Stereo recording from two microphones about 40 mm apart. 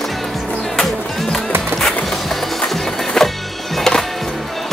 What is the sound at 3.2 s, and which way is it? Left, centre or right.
Music, centre.